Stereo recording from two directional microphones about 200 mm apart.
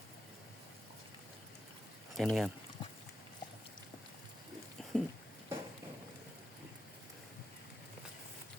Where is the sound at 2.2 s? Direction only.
Centre (ahead or behind).